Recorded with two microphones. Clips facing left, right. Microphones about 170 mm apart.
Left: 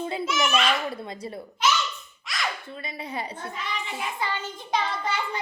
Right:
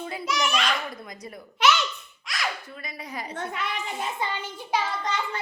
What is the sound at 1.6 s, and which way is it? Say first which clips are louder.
Babbling: right 3 dB; 65° right (ahead or behind).